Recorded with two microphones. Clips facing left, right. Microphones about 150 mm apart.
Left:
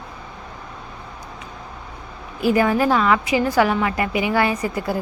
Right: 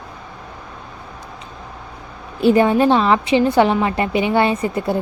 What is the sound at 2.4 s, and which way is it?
A woman's voice, 25° right (ahead or behind).